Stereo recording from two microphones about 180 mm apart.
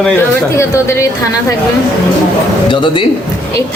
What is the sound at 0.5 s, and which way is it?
Speech, 15° left (ahead or behind).